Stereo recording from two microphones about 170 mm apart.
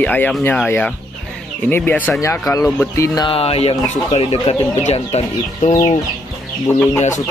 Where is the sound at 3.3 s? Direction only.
35° left (ahead or behind).